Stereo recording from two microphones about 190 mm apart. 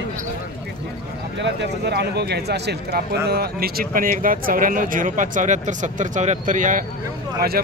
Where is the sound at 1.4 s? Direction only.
65° right (ahead or behind).